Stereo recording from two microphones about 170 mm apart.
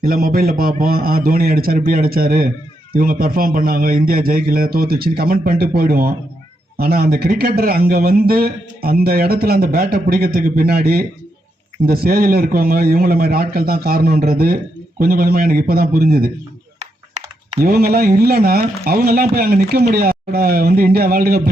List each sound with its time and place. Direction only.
0.0 s a man's voice: 55° right (ahead or behind)
17.2 s typing: 40° right (ahead or behind)
17.6 s a man's voice: 60° right (ahead or behind)